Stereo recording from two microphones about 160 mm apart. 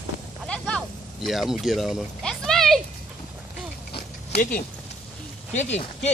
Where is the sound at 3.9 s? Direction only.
70° left (ahead or behind).